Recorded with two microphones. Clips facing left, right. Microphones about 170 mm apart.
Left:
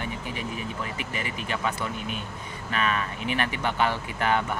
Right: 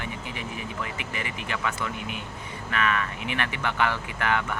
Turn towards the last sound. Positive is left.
turn(degrees=20)  # may be behind; listen again after turning